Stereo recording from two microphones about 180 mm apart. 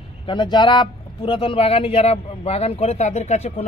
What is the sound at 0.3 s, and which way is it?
Speech, 25° left (ahead or behind).